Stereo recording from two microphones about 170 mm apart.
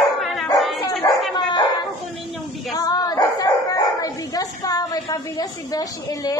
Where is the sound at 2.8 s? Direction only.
20° left (ahead or behind).